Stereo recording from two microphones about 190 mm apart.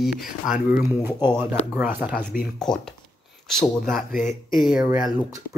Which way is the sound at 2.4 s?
5° left (ahead or behind).